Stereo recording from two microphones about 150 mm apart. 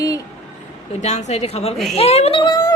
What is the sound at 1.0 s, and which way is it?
A woman's voice, 50° left (ahead or behind).